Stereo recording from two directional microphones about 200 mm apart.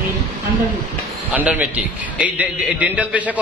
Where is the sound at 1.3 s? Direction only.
5° right (ahead or behind).